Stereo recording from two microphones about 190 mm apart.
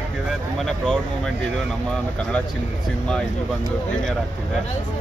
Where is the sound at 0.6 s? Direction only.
5° left (ahead or behind).